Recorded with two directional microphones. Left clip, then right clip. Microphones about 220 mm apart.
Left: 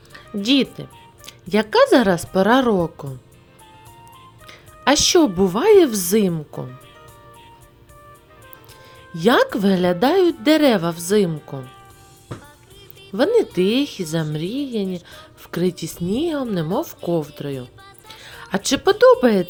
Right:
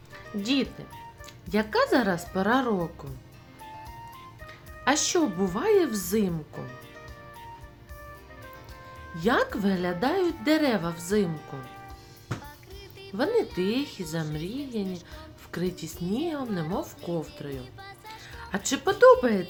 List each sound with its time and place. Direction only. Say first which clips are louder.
0.4 s speech: left 10 dB; 40° left (ahead or behind)
4.4 s speech: left 8 dB; 40° left (ahead or behind)
9.1 s speech: left 9 dB; 40° left (ahead or behind)
13.1 s speech: left 9 dB; 35° left (ahead or behind)